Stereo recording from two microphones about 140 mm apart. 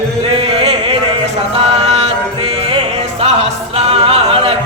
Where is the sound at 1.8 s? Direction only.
45° right (ahead or behind).